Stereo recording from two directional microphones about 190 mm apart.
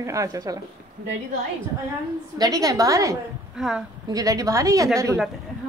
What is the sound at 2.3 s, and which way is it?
Speech, 20° right (ahead or behind).